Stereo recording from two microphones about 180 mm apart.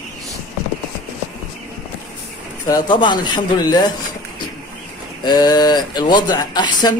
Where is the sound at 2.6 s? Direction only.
20° left (ahead or behind).